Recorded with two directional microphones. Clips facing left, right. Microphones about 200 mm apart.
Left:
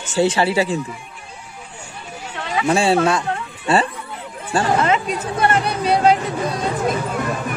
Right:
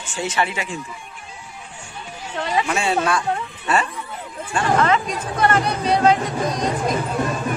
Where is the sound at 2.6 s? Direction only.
30° left (ahead or behind).